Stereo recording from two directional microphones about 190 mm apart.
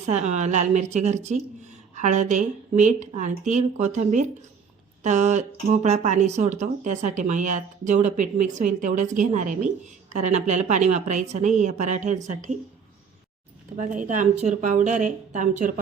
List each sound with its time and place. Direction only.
0.0 s speech: 35° right (ahead or behind)
13.7 s speech: 40° right (ahead or behind)